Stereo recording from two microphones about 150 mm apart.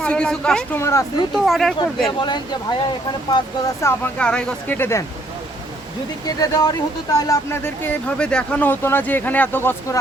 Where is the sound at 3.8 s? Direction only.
10° left (ahead or behind).